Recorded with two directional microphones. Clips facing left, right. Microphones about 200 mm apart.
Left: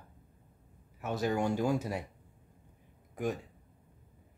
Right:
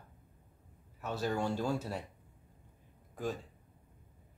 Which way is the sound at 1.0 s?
15° left (ahead or behind).